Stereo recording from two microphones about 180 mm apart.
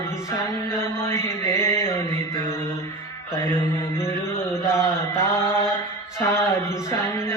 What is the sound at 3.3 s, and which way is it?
Mantra, 10° left (ahead or behind).